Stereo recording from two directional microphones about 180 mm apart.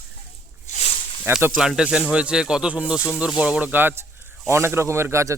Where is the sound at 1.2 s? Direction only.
10° right (ahead or behind).